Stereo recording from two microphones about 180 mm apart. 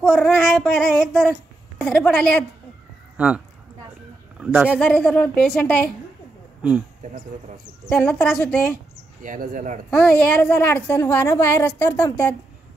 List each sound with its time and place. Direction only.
0.0 s child singing: centre (ahead or behind)
3.2 s speech: 5° right (ahead or behind)
4.7 s child singing: 5° left (ahead or behind)
7.8 s child singing: centre (ahead or behind)
9.2 s speech: 45° right (ahead or behind)
9.8 s a woman's voice: 5° left (ahead or behind)